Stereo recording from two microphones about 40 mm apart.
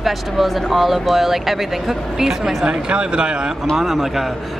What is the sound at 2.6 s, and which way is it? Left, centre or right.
Speech, right.